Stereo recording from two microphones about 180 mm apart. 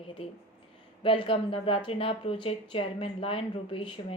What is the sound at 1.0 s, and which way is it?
A woman's voice, 30° left (ahead or behind).